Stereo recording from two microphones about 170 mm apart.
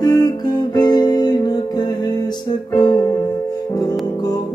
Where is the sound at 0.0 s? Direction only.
25° left (ahead or behind).